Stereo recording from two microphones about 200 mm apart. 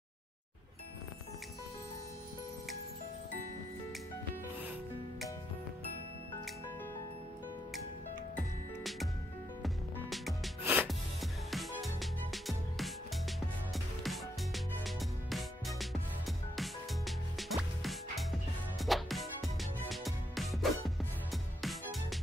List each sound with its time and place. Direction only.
9.6 s music: centre (ahead or behind)
10.6 s music: 10° right (ahead or behind)
10.9 s music: centre (ahead or behind)
14.0 s music: centre (ahead or behind)